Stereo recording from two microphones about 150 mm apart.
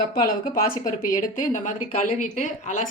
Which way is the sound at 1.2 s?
60° left (ahead or behind).